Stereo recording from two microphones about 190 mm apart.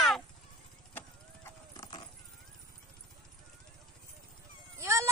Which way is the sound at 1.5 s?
20° left (ahead or behind).